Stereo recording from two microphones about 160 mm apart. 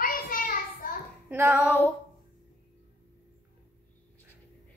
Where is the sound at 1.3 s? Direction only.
15° right (ahead or behind).